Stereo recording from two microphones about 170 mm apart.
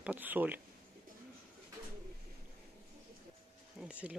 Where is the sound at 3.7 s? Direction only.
5° right (ahead or behind).